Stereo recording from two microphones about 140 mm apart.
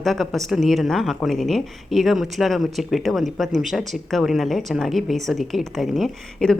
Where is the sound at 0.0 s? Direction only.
Centre (ahead or behind).